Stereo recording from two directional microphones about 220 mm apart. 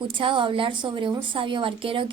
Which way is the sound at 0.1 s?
25° right (ahead or behind).